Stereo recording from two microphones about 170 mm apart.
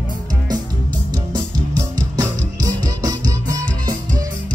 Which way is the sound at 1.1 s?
25° right (ahead or behind).